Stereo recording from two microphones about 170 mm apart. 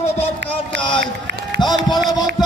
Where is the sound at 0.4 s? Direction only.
90° right.